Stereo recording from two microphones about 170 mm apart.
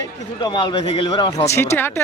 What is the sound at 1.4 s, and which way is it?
Speech, 15° left (ahead or behind).